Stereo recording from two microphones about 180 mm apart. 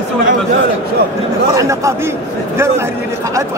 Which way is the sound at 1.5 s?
15° right (ahead or behind).